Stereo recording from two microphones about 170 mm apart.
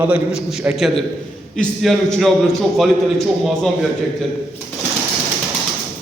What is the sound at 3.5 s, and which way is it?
Speech, centre (ahead or behind).